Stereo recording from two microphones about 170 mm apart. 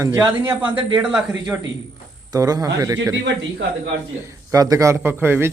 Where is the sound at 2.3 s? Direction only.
20° right (ahead or behind).